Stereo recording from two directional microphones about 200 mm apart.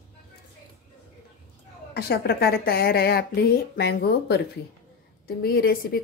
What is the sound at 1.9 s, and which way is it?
Speech, 50° left (ahead or behind).